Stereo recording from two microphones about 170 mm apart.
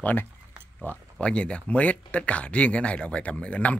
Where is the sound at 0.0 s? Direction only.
10° left (ahead or behind).